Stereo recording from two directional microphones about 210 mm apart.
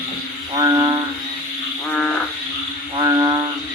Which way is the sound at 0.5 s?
20° right (ahead or behind).